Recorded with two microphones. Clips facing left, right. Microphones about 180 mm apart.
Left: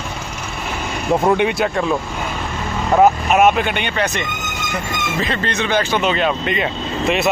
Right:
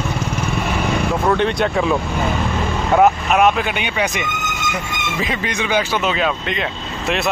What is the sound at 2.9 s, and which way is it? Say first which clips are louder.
Speech: left 1 dB; centre (ahead or behind).